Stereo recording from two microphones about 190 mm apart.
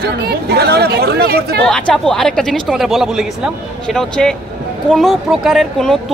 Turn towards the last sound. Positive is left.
turn(degrees=0)  # may be behind; listen again after turning